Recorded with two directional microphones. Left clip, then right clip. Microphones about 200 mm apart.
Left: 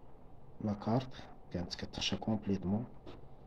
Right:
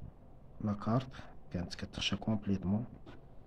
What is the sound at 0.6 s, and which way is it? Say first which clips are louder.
Speech: even; 40° right (ahead or behind).